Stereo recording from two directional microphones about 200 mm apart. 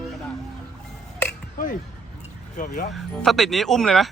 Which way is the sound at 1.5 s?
40° left (ahead or behind).